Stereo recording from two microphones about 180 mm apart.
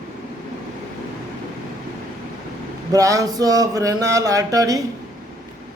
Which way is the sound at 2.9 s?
20° right (ahead or behind).